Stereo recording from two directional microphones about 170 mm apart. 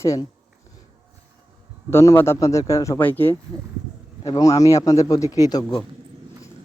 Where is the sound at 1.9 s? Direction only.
15° left (ahead or behind).